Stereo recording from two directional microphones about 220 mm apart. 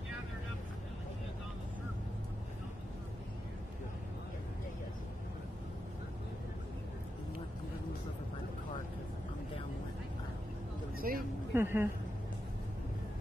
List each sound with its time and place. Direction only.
11.0 s speech: 40° right (ahead or behind)
11.5 s a woman's voice: 10° right (ahead or behind)